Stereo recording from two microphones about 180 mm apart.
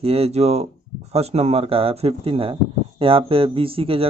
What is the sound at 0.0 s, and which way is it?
Speech, 35° right (ahead or behind).